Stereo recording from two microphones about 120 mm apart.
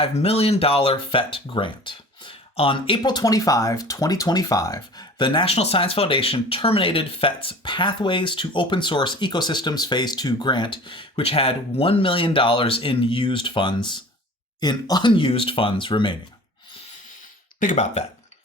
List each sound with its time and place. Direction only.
0.0 s speech: 55° left (ahead or behind)
5.5 s speech: 60° left (ahead or behind); by 16.1 s 40° left (ahead or behind)
17.6 s speech: 80° left